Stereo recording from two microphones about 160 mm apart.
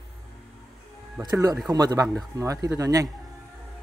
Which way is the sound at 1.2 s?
20° right (ahead or behind).